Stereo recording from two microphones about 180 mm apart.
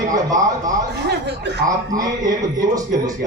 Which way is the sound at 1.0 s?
70° right (ahead or behind).